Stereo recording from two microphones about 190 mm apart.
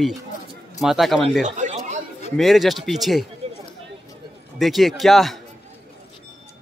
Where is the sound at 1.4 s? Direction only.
40° right (ahead or behind).